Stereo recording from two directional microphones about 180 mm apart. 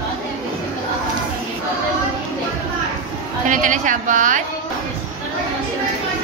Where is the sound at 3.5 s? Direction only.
45° right (ahead or behind).